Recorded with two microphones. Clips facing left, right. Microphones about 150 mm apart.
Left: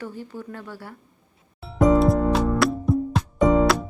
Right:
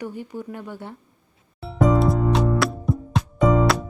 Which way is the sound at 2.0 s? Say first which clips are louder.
Left 1 dB; centre (ahead or behind).